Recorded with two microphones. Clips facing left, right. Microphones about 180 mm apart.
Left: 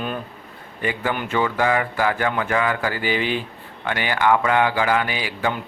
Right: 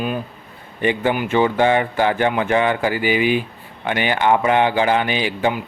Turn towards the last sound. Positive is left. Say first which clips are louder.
# right 5 dB
turn(degrees=-20)  # may be behind; listen again after turning